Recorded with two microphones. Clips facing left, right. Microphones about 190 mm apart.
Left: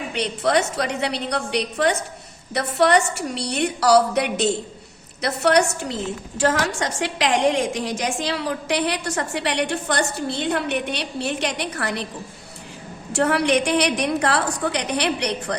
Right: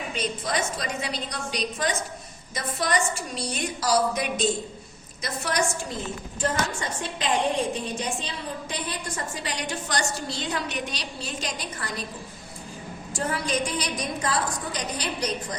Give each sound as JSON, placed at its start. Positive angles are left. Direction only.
{"t": 0.1, "sound": "a woman's voice", "side_deg": 65}
{"t": 6.4, "sound": "a woman's voice", "side_deg": 90}
{"t": 13.1, "sound": "a woman's voice", "side_deg": 70}